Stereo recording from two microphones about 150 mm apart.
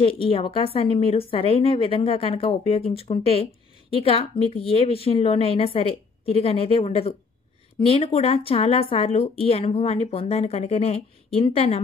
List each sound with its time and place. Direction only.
0.0 s a woman's voice: 35° left (ahead or behind)